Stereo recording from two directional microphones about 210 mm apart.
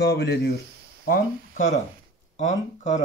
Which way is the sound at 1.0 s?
40° left (ahead or behind).